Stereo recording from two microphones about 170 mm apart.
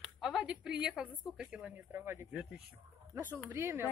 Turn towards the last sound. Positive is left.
turn(degrees=-15)  # may be behind; listen again after turning